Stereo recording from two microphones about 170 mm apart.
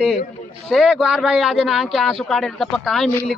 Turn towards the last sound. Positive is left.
turn(degrees=5)  # may be behind; listen again after turning